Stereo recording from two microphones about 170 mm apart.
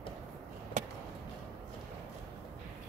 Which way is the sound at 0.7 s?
45° right (ahead or behind).